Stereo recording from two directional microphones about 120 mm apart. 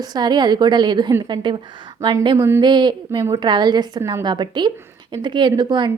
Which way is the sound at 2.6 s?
40° right (ahead or behind).